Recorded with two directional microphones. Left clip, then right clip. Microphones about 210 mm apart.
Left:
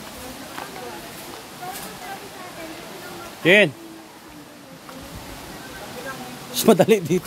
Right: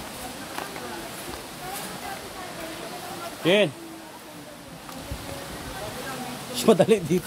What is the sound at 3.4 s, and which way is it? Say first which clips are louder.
Speech: left 6 dB; 45° left (ahead or behind).